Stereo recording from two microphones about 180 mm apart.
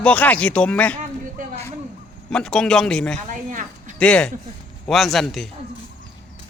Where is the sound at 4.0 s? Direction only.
5° left (ahead or behind).